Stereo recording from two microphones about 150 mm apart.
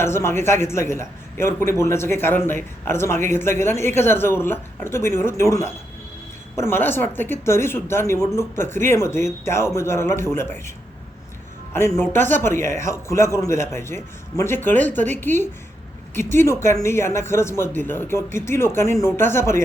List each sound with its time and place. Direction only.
0.0 s a man's voice: 15° left (ahead or behind)
11.7 s a man's voice: 15° left (ahead or behind)